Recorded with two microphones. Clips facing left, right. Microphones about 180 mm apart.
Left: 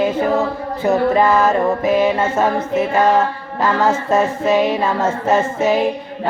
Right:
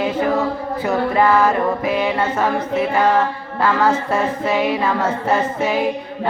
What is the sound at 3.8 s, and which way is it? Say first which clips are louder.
Mantra: left 2 dB; 25° left (ahead or behind).